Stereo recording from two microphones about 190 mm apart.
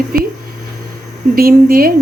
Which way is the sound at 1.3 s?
50° right (ahead or behind).